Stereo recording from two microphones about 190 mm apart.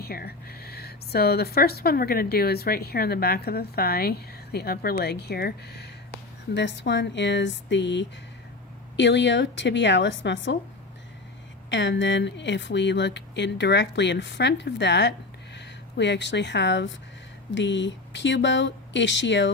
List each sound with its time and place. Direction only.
0.0 s speech: 55° left (ahead or behind); by 10.6 s 70° left (ahead or behind)
11.7 s speech: 70° left (ahead or behind)